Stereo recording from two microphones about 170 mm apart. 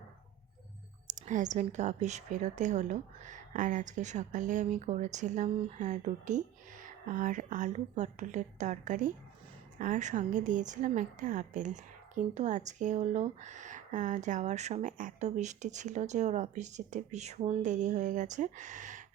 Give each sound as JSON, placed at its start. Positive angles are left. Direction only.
{"t": 1.0, "sound": "a woman's voice", "side_deg": -45}